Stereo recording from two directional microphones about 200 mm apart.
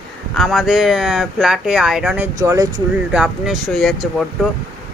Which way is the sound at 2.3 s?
15° right (ahead or behind).